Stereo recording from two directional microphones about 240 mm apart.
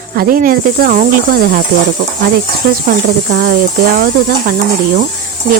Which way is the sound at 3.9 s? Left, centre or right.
Right.